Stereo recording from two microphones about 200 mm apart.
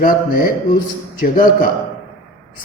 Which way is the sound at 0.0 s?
45° left (ahead or behind).